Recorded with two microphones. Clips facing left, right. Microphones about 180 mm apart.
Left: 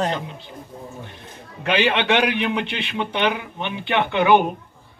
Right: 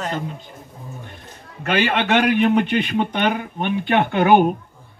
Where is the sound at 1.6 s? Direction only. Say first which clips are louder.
Even; 45° right (ahead or behind).